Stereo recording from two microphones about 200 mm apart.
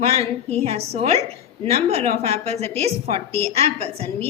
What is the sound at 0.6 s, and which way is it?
A woman's voice, 30° right (ahead or behind).